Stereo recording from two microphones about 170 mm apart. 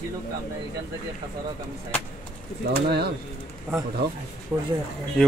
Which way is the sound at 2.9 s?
70° right (ahead or behind).